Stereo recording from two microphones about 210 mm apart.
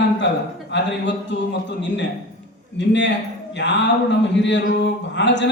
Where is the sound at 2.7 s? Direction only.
55° left (ahead or behind).